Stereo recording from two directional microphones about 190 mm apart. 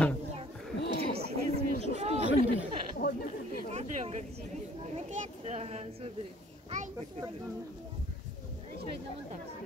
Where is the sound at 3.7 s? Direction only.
35° right (ahead or behind).